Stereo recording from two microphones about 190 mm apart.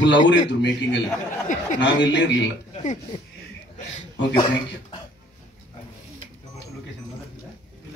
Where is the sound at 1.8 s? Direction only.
70° left (ahead or behind).